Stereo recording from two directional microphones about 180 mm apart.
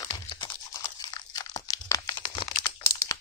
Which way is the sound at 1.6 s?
15° left (ahead or behind).